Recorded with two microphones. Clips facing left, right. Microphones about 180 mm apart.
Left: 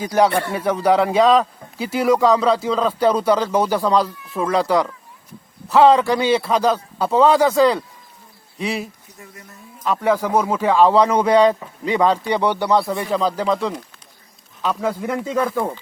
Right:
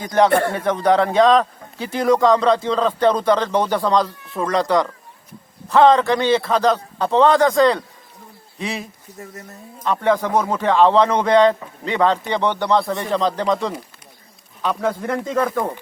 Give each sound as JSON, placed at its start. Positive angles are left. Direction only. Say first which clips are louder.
{"t": 0.0, "sound": "a man's voice", "louder": "even", "side_deg": 10}
{"t": 0.3, "sound": "speech", "louder": "right 4 dB", "side_deg": -55}
{"t": 0.5, "sound": "a man's voice", "louder": "even", "side_deg": 10}